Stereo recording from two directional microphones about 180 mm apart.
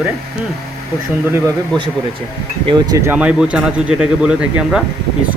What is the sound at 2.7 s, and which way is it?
Speech, 20° right (ahead or behind).